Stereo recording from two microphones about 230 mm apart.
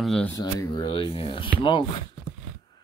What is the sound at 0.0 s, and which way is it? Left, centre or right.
Speech, centre.